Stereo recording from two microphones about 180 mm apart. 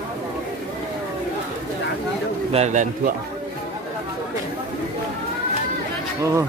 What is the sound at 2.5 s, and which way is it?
Speech, 40° right (ahead or behind).